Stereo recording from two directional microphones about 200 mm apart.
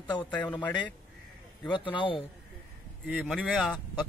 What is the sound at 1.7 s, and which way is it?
Speech, 25° left (ahead or behind).